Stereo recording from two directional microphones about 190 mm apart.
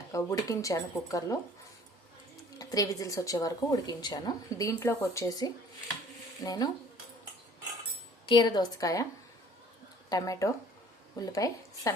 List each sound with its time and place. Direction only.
0.1 s speech: 15° left (ahead or behind)
2.6 s a woman's voice: 20° left (ahead or behind)
8.3 s a woman's voice: 20° left (ahead or behind)
10.1 s speech: 20° left (ahead or behind)